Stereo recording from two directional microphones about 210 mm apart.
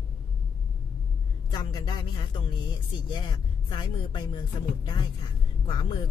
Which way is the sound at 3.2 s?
20° left (ahead or behind).